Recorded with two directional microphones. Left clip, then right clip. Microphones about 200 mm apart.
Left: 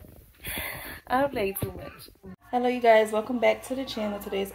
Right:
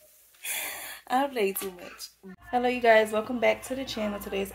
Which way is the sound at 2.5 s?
10° right (ahead or behind).